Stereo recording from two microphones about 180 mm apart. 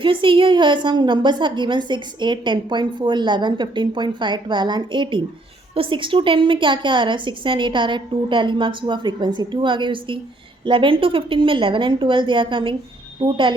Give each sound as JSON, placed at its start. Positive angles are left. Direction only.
{"t": 0.0, "sound": "a woman's voice", "side_deg": -30}